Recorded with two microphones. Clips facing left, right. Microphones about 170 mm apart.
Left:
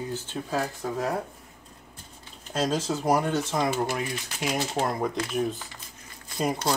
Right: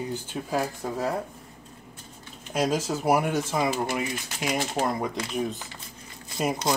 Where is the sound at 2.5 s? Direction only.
10° right (ahead or behind).